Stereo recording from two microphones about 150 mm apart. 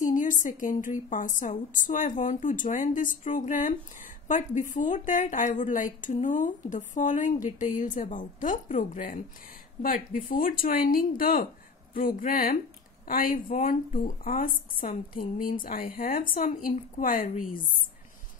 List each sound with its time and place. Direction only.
0.0 s a woman's voice: 60° left (ahead or behind)